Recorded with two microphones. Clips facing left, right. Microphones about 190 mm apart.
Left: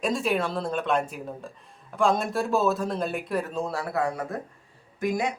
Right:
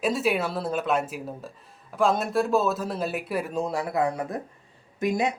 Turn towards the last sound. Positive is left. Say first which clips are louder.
# right 2 dB
turn(degrees=-25)  # may be behind; listen again after turning